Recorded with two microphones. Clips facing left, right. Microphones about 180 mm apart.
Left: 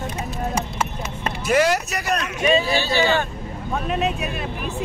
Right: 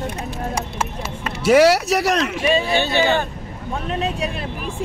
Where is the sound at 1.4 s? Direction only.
75° right (ahead or behind).